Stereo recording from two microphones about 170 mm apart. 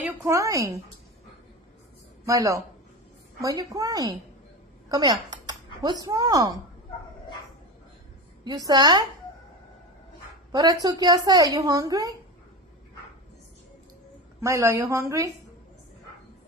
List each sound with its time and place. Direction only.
0.2 s a woman's voice: 20° right (ahead or behind)
2.2 s speech: 20° right (ahead or behind)
4.8 s a sound: 25° right (ahead or behind)
6.0 s speech: 20° right (ahead or behind)
8.5 s speech: 20° right (ahead or behind)
10.5 s speech: 20° right (ahead or behind)
14.4 s a woman's voice: 15° right (ahead or behind)